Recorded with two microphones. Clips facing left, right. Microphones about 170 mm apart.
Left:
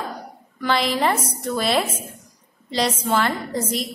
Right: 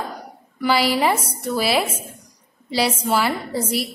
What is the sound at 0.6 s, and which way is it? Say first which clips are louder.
A woman's voice: right 2 dB; 5° right (ahead or behind).